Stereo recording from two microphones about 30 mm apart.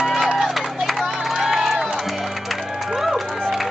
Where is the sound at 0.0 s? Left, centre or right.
Centre.